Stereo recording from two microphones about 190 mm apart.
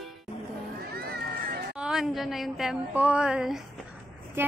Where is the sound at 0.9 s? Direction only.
55° right (ahead or behind).